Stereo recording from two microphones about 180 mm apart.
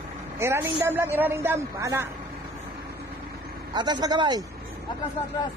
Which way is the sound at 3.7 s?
25° right (ahead or behind).